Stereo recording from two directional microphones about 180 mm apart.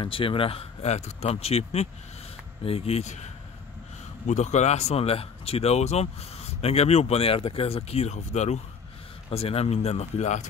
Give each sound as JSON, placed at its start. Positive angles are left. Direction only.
{"t": 0.0, "sound": "speech", "side_deg": 30}
{"t": 4.3, "sound": "speech", "side_deg": 40}